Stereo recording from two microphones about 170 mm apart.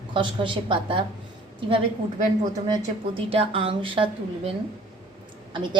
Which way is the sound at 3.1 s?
30° right (ahead or behind).